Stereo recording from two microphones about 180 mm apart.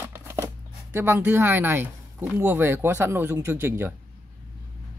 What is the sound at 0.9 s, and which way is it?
Speech, 10° right (ahead or behind).